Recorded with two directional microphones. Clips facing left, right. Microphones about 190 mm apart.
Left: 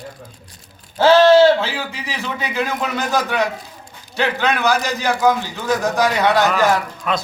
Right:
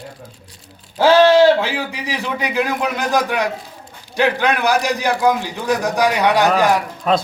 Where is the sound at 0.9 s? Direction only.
15° right (ahead or behind).